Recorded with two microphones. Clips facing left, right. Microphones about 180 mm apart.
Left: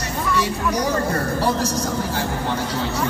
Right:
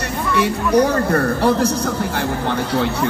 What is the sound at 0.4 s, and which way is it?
Speech, 60° right (ahead or behind).